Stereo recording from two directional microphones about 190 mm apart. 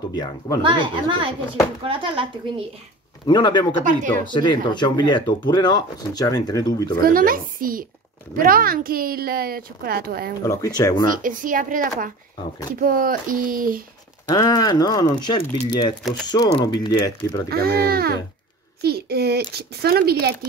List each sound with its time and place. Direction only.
0.1 s speech: 20° left (ahead or behind)
0.6 s a woman's voice: 25° right (ahead or behind)
3.3 s speech: 25° left (ahead or behind)
7.0 s a woman's voice: 50° right (ahead or behind)
10.4 s speech: 15° left (ahead or behind)
11.1 s a woman's voice: 45° right (ahead or behind)
14.3 s speech: 20° left (ahead or behind)
16.0 s speech: centre (ahead or behind)
16.3 s speech: 20° left (ahead or behind)
17.5 s speech: 55° right (ahead or behind)